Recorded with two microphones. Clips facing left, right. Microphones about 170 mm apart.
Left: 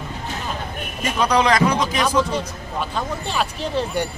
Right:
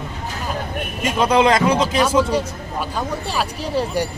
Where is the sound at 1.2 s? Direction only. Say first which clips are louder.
Right 2 dB; 25° right (ahead or behind).